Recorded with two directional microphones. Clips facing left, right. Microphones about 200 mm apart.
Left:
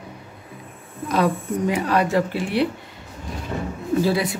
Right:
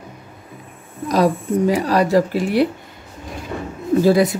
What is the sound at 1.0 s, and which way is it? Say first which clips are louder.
Speech: right 4 dB; 35° right (ahead or behind).